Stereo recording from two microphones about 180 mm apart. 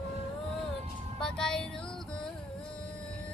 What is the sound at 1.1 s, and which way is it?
Music, 5° left (ahead or behind).